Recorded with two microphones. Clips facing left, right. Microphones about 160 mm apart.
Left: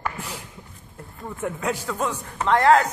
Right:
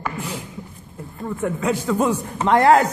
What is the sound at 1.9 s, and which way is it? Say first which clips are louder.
Speech: right 7 dB; 15° right (ahead or behind).